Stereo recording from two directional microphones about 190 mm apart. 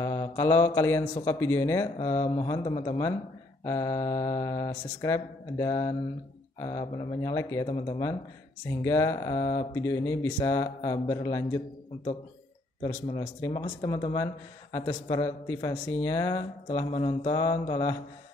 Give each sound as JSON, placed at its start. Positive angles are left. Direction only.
{"t": 0.0, "sound": "mantra", "side_deg": 15}
{"t": 1.1, "sound": "speech", "side_deg": 15}
{"t": 3.6, "sound": "mantra", "side_deg": 15}
{"t": 4.8, "sound": "speech", "side_deg": 15}
{"t": 6.6, "sound": "mantra", "side_deg": 20}
{"t": 8.8, "sound": "speech", "side_deg": 15}
{"t": 13.0, "sound": "mantra", "side_deg": 25}
{"t": 14.1, "sound": "speech", "side_deg": 20}
{"t": 16.7, "sound": "mantra", "side_deg": 30}